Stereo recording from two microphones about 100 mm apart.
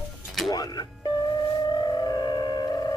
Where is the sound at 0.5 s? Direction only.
45° left (ahead or behind).